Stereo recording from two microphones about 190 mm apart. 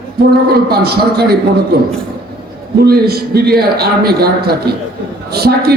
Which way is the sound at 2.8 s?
55° right (ahead or behind).